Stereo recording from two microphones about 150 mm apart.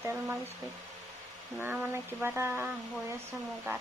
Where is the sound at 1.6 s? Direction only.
10° right (ahead or behind).